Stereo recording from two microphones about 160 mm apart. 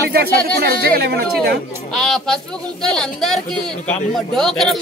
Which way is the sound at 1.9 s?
Centre (ahead or behind).